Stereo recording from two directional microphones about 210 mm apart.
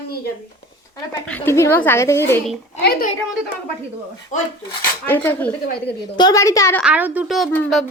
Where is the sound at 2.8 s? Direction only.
50° left (ahead or behind).